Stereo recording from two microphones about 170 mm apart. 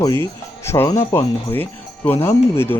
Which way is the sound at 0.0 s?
15° left (ahead or behind).